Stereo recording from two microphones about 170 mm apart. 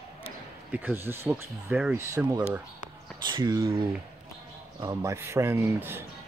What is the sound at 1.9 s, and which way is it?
Speech, 15° right (ahead or behind).